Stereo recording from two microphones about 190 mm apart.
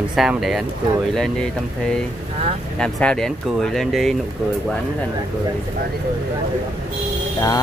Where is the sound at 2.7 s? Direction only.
5° left (ahead or behind).